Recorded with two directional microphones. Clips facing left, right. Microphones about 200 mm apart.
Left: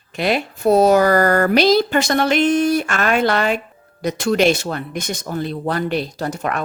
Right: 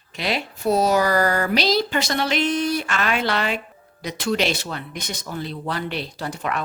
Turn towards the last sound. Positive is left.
turn(degrees=45)  # may be behind; listen again after turning